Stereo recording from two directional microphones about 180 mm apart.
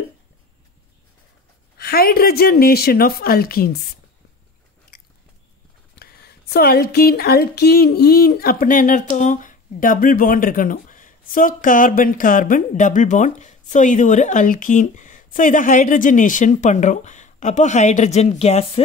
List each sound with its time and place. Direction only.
1.8 s a woman's voice: 55° left (ahead or behind)
5.9 s speech: 60° left (ahead or behind); by 18.7 s 35° left (ahead or behind)